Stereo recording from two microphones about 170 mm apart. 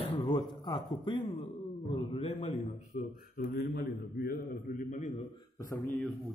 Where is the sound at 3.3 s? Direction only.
65° left (ahead or behind).